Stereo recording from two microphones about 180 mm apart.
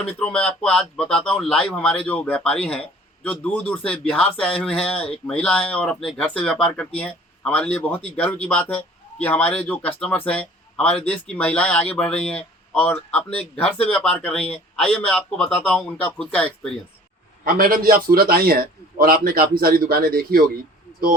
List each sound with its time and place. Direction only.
0.0 s speech: 5° left (ahead or behind)
17.4 s a man's voice: 55° right (ahead or behind)